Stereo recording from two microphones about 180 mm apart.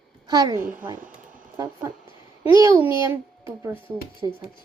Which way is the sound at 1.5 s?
15° right (ahead or behind).